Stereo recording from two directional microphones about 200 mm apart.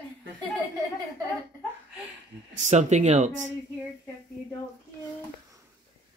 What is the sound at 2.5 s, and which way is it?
Speech, 35° right (ahead or behind).